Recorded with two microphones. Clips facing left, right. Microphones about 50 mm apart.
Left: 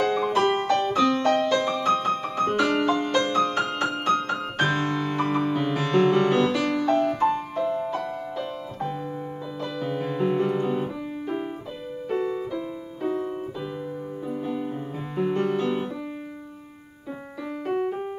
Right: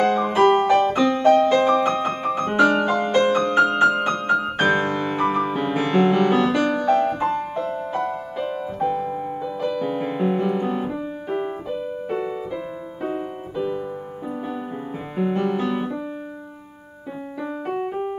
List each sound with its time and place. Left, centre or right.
0.0 s music: right
0.9 s music: centre
1.6 s music: right
2.8 s music: centre
6.8 s piano: right
8.7 s music: right
10.4 s piano: centre
12.1 s music: centre
13.0 s piano: right
17.6 s keyboard: centre